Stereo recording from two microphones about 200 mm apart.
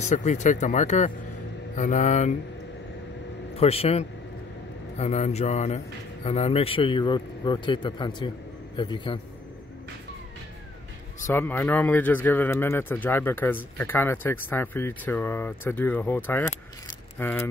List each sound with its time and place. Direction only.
0.0 s speech: 35° left (ahead or behind)
3.5 s a man's voice: 30° left (ahead or behind)
11.2 s speech: 10° left (ahead or behind)